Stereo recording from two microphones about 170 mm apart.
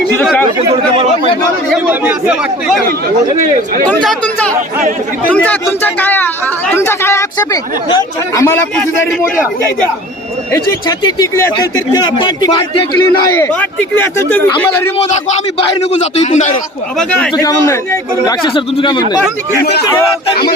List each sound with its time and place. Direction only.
0.2 s chatter: 5° left (ahead or behind)
1.7 s speech: 10° right (ahead or behind)
3.8 s speech: 5° left (ahead or behind)
10.5 s a man's voice: 20° left (ahead or behind)
13.4 s speech: 10° left (ahead or behind)
14.9 s speech: 40° left (ahead or behind)
17.0 s speech: 5° left (ahead or behind)
17.3 s a man's voice: 20° left (ahead or behind)
18.3 s a man's voice: 30° left (ahead or behind)